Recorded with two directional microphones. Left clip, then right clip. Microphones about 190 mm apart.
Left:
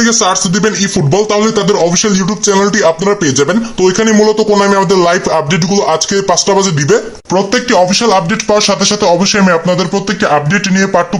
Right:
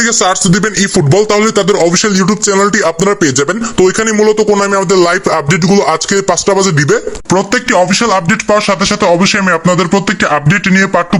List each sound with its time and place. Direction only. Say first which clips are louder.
0.0 s speech: even; 25° right (ahead or behind)